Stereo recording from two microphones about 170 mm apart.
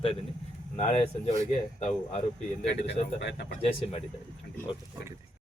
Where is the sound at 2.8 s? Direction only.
85° left.